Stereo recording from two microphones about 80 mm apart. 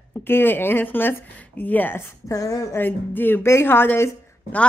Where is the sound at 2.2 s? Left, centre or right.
Left.